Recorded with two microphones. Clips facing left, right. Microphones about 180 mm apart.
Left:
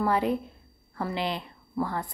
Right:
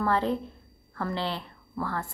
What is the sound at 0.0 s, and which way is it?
A woman's voice, 10° left (ahead or behind).